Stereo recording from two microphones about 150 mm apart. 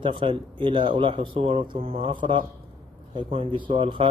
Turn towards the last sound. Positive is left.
turn(degrees=-35)  # may be behind; listen again after turning